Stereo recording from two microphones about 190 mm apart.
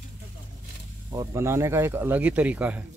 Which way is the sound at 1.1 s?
15° right (ahead or behind).